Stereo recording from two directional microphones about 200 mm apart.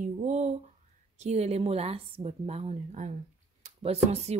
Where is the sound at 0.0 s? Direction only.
35° right (ahead or behind).